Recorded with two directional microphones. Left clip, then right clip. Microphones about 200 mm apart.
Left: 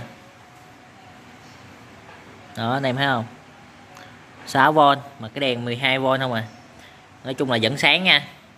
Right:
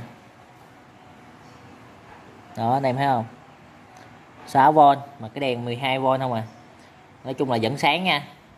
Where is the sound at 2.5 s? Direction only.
10° right (ahead or behind).